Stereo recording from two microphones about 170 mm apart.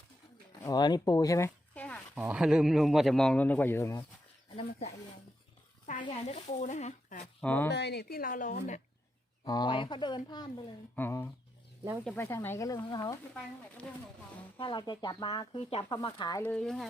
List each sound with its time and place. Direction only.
0.6 s speech: 25° left (ahead or behind)
2.1 s a man's voice: 5° right (ahead or behind); by 4.0 s 15° left (ahead or behind)
4.5 s speech: 40° left (ahead or behind)
6.0 s speech: 35° left (ahead or behind)
7.4 s speech: 10° left (ahead or behind)
7.7 s a woman's voice: 80° left; by 8.8 s 50° left (ahead or behind)
9.4 s speech: 25° left (ahead or behind)
10.9 s speech: 15° left (ahead or behind)
14.6 s speech: 25° left (ahead or behind)
16.4 s a man's voice: 5° left (ahead or behind)